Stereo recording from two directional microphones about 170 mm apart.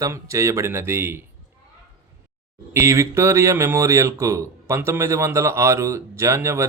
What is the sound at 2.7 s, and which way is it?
Speech, 15° right (ahead or behind).